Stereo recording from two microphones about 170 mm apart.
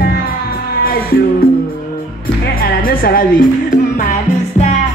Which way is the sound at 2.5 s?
60° left (ahead or behind).